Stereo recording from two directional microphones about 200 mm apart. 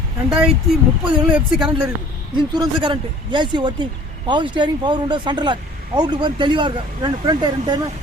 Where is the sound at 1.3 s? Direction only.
25° right (ahead or behind).